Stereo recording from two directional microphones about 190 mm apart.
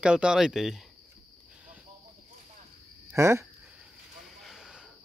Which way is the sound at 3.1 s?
15° right (ahead or behind).